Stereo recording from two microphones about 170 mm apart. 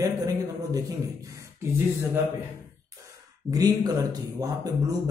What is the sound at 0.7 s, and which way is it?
Speech, 20° right (ahead or behind).